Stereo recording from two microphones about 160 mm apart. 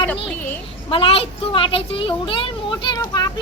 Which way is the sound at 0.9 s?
35° left (ahead or behind).